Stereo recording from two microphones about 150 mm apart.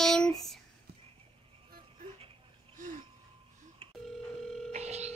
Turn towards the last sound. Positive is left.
turn(degrees=-45)  # may be behind; listen again after turning